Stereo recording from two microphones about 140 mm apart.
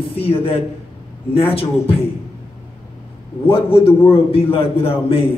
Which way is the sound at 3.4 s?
40° left (ahead or behind).